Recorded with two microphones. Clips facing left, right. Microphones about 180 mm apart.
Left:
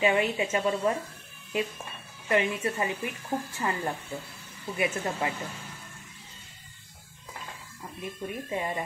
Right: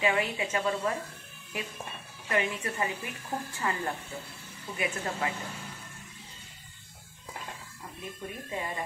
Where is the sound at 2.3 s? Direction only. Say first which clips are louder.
Left 4 dB; 25° left (ahead or behind).